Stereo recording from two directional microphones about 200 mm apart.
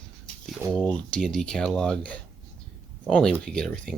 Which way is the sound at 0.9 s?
5° left (ahead or behind).